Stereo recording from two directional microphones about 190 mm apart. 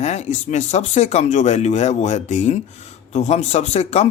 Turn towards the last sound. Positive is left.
turn(degrees=35)  # may be behind; listen again after turning